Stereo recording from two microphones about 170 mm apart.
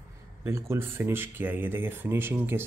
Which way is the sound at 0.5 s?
15° right (ahead or behind).